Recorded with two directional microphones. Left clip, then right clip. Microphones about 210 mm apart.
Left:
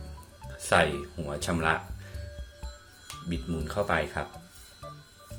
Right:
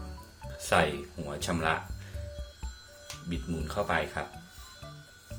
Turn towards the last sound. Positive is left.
turn(degrees=15)  # may be behind; listen again after turning